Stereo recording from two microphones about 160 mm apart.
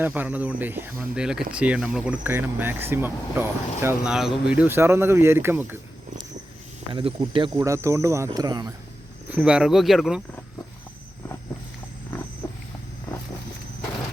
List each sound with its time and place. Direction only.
0.0 s speech: 10° right (ahead or behind)
4.1 s speech: 5° right (ahead or behind)
6.9 s speech: 35° right (ahead or behind)
9.3 s speech: 5° right (ahead or behind)